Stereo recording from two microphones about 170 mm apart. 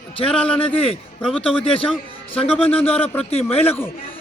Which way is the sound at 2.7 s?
10° left (ahead or behind).